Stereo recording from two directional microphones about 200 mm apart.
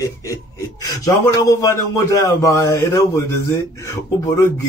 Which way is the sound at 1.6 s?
15° left (ahead or behind).